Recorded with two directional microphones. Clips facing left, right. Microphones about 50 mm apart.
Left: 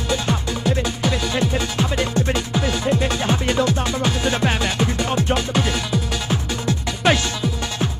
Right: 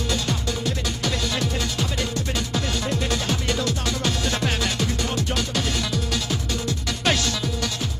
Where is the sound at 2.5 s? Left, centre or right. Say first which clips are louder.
Left 5 dB; centre.